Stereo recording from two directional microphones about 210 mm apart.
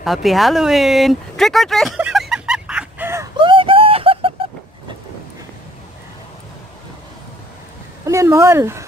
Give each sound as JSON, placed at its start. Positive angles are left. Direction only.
{"t": 0.0, "sound": "speech", "side_deg": 0}
{"t": 3.3, "sound": "a sound", "side_deg": -25}
{"t": 8.0, "sound": "speech", "side_deg": -15}